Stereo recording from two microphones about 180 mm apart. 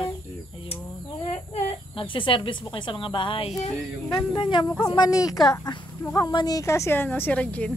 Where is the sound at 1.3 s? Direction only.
35° left (ahead or behind); by 7.7 s 5° left (ahead or behind).